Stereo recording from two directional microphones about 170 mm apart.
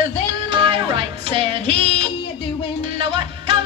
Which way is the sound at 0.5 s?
30° right (ahead or behind).